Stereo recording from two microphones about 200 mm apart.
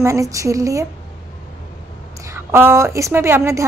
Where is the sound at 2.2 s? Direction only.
15° right (ahead or behind).